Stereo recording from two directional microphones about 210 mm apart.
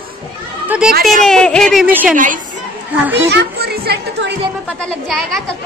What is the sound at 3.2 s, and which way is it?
A child's voice, 50° right (ahead or behind).